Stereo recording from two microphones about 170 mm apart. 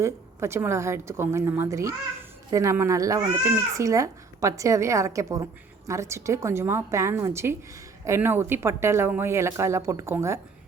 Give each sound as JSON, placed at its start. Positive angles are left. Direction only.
{"t": 0.0, "sound": "speech", "side_deg": -15}